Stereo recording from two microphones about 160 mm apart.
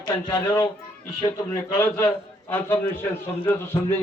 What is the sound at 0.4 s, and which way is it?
A man's voice, 10° left (ahead or behind).